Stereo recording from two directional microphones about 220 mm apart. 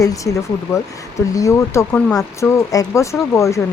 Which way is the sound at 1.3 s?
15° left (ahead or behind).